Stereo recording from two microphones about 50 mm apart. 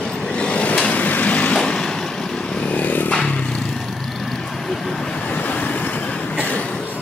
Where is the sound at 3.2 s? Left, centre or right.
Left.